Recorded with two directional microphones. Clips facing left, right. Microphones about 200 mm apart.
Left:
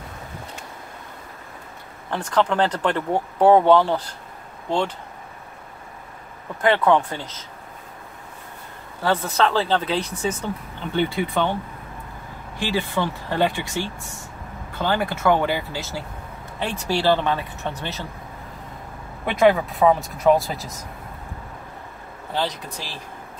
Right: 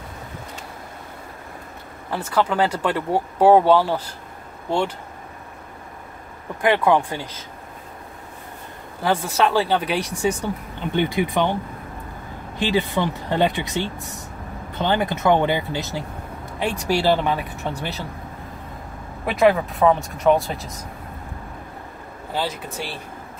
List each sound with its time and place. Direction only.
2.0 s speech: 5° right (ahead or behind)
6.6 s speech: 10° right (ahead or behind)
9.0 s speech: 10° right (ahead or behind)
12.5 s speech: 20° right (ahead or behind)
19.2 s speech: centre (ahead or behind)
22.3 s speech: 5° right (ahead or behind)